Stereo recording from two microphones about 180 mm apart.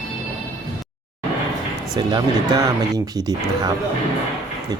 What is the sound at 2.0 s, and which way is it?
Speech, 25° right (ahead or behind).